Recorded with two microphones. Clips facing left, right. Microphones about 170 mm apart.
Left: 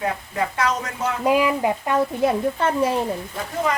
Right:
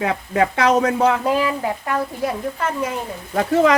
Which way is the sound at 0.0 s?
75° right (ahead or behind).